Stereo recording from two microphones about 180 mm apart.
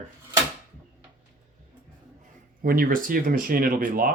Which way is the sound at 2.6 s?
55° right (ahead or behind).